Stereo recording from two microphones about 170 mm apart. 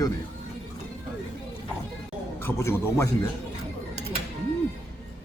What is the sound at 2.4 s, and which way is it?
Speech, 15° left (ahead or behind).